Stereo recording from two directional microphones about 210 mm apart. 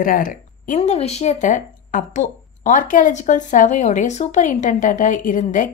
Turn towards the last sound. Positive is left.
turn(degrees=40)  # may be behind; listen again after turning